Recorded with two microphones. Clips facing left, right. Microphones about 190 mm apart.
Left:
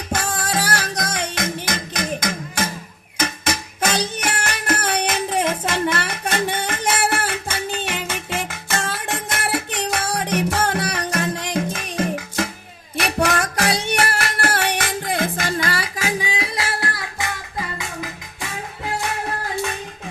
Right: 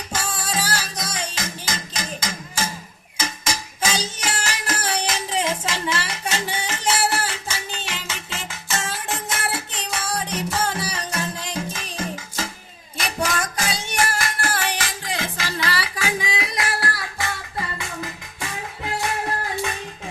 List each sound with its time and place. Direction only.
0.1 s music: 65° left (ahead or behind); by 17.3 s 20° left (ahead or behind)